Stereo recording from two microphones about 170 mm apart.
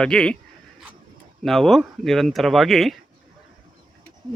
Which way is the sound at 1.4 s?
Centre (ahead or behind).